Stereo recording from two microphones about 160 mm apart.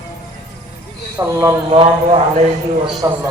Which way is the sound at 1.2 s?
15° right (ahead or behind).